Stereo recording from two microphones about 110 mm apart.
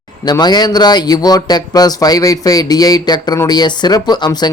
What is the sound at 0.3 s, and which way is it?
Speech, 40° left (ahead or behind).